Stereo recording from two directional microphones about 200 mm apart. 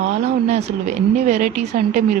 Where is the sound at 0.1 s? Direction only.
35° right (ahead or behind).